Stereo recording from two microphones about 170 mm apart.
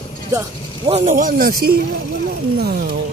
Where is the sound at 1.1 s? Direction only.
55° right (ahead or behind).